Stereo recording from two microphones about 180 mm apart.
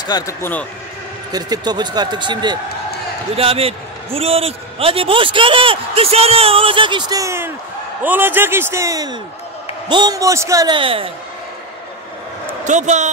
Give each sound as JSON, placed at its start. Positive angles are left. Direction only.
{"t": 0.0, "sound": "speech", "side_deg": 20}
{"t": 1.3, "sound": "a man's voice", "side_deg": -20}
{"t": 12.6, "sound": "a man's voice", "side_deg": -40}